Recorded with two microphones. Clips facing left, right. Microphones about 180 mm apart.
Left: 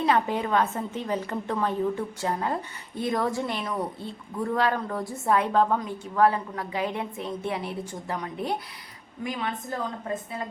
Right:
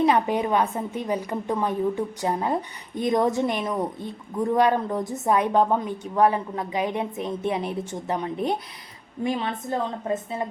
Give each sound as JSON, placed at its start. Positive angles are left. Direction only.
{"t": 0.0, "sound": "a woman's voice", "side_deg": -15}